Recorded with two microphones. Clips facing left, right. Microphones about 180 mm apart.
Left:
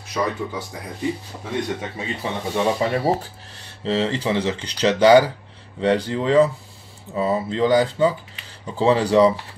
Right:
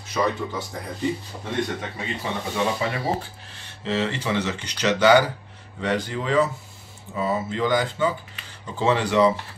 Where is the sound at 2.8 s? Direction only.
35° left (ahead or behind).